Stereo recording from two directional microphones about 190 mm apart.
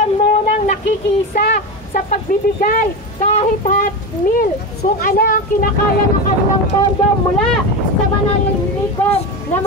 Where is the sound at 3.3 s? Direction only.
35° left (ahead or behind).